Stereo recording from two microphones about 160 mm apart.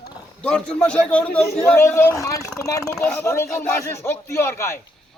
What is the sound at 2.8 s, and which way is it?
Speech, 5° left (ahead or behind).